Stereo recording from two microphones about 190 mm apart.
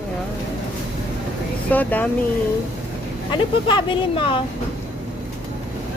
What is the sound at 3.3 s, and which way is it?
Speech, 25° left (ahead or behind).